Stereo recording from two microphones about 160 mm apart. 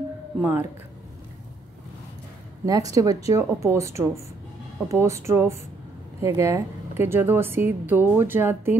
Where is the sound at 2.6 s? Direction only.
20° right (ahead or behind).